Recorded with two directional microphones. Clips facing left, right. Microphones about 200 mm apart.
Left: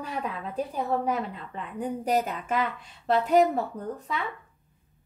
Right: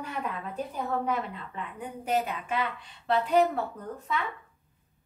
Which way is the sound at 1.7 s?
40° left (ahead or behind).